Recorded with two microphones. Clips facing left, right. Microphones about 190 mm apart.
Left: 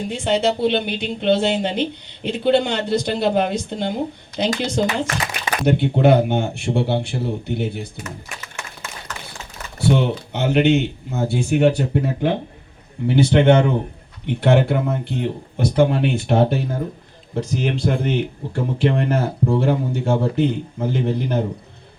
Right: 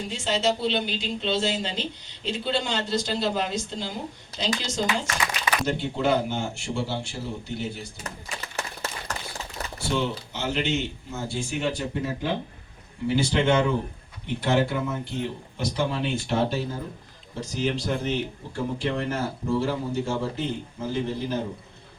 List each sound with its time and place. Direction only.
0.0 s speech: 60° left (ahead or behind)
9.7 s speech: 60° left (ahead or behind)